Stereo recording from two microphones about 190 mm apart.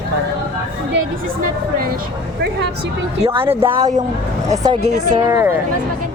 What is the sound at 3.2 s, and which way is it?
Speech, 30° right (ahead or behind).